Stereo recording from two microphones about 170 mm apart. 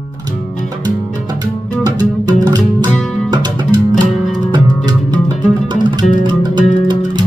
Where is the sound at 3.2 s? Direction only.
25° right (ahead or behind).